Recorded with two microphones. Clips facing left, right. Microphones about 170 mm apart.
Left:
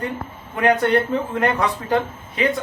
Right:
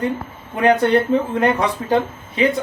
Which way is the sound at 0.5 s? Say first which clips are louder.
Right 3 dB; 20° right (ahead or behind).